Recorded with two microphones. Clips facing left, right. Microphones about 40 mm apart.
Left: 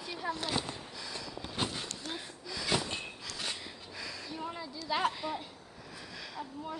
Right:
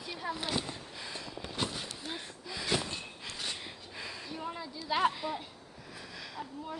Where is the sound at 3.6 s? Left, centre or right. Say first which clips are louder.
Even; right.